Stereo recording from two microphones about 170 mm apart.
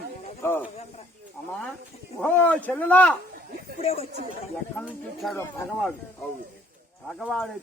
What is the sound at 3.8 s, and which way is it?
Speech, 35° left (ahead or behind).